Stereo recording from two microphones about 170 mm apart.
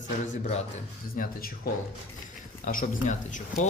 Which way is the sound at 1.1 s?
55° left (ahead or behind).